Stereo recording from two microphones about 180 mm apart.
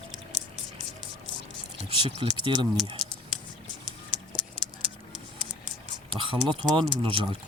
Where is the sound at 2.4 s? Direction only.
25° right (ahead or behind).